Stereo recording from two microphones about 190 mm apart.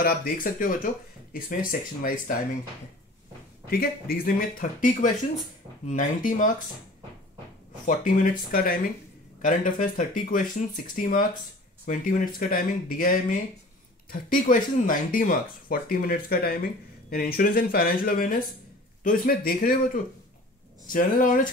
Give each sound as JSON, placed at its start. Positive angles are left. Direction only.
{"t": 0.0, "sound": "speech", "side_deg": 50}
{"t": 3.7, "sound": "speech", "side_deg": 50}
{"t": 7.8, "sound": "speech", "side_deg": 45}